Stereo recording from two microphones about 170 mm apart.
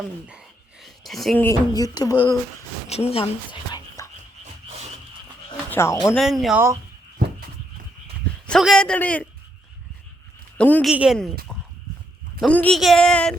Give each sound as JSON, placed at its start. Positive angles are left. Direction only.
{"t": 0.3, "sound": "a sound", "side_deg": 0}
{"t": 1.4, "sound": "a sound", "side_deg": 20}
{"t": 2.8, "sound": "dog", "side_deg": 40}
{"t": 5.7, "sound": "speech", "side_deg": 15}
{"t": 6.0, "sound": "speech", "side_deg": 5}
{"t": 8.4, "sound": "speech", "side_deg": 0}
{"t": 10.6, "sound": "a man's voice", "side_deg": 10}
{"t": 10.8, "sound": "speech", "side_deg": -5}
{"t": 12.4, "sound": "speech", "side_deg": 5}